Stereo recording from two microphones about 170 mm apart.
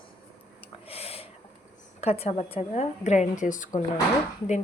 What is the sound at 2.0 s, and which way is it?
A woman's voice, 40° left (ahead or behind).